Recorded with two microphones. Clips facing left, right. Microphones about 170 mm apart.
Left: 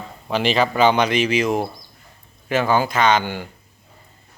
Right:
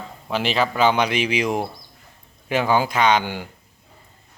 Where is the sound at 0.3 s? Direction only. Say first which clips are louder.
Left 3 dB; centre (ahead or behind).